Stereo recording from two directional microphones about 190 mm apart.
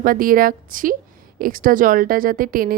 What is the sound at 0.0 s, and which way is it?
Speech, 50° right (ahead or behind).